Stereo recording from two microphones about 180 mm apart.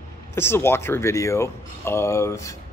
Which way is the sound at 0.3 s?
15° left (ahead or behind).